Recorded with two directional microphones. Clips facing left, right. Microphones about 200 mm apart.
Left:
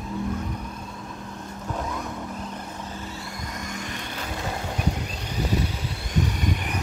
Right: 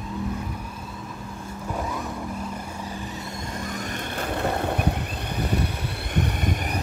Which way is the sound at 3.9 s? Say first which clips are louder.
Right 5 dB; 55° right (ahead or behind).